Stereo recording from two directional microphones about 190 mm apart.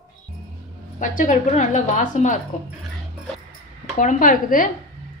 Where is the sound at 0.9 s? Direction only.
45° left (ahead or behind).